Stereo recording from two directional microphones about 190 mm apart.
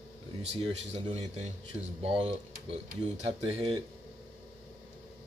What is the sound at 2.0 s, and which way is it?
Speech, 30° right (ahead or behind).